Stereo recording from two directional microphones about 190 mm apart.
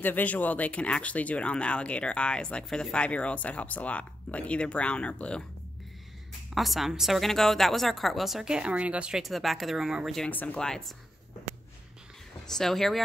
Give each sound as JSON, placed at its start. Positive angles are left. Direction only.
{"t": 0.0, "sound": "speech", "side_deg": 10}
{"t": 6.5, "sound": "a woman's voice", "side_deg": 0}
{"t": 12.4, "sound": "a woman's voice", "side_deg": 0}